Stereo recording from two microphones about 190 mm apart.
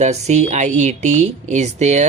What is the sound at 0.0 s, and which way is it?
Speech, 35° right (ahead or behind).